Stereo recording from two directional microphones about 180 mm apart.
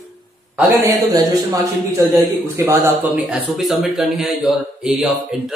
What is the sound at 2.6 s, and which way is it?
A man's voice, 10° right (ahead or behind).